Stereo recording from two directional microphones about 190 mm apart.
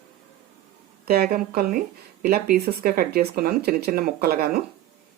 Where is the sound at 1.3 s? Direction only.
50° right (ahead or behind).